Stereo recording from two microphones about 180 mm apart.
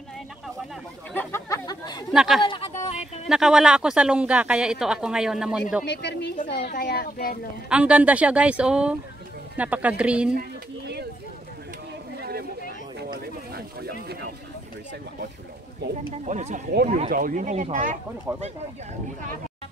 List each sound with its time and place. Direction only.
1.1 s chatter: 15° left (ahead or behind)
2.1 s speech: centre (ahead or behind)
2.4 s a sound: 25° left (ahead or behind)
2.7 s a sound: 40° left (ahead or behind)
3.3 s speech: centre (ahead or behind)
5.9 s speech: 70° left (ahead or behind)
6.5 s speech: 60° left (ahead or behind)
7.7 s a woman's voice: 5° right (ahead or behind)
12.2 s a sound: 60° right (ahead or behind)
16.3 s speech: 40° right (ahead or behind)
17.1 s speech: 45° right (ahead or behind)